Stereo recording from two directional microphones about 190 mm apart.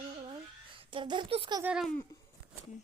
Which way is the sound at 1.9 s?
15° left (ahead or behind).